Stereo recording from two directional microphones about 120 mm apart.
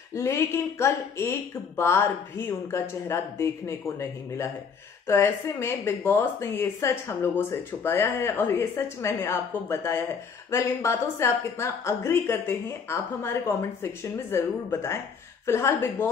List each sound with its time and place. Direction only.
0.1 s speech: 25° left (ahead or behind)